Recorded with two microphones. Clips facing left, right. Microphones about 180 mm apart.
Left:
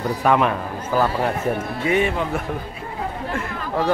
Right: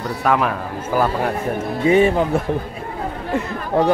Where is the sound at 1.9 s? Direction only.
35° right (ahead or behind).